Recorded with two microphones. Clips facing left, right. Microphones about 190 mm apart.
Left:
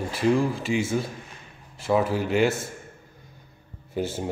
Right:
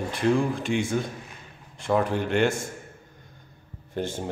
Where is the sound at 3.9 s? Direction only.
5° left (ahead or behind).